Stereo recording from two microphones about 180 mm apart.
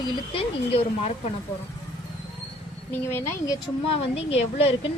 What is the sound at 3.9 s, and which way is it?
Speech, 35° left (ahead or behind).